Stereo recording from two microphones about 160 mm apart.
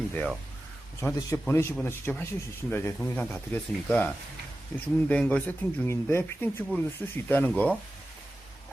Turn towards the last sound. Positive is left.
turn(degrees=10)  # may be behind; listen again after turning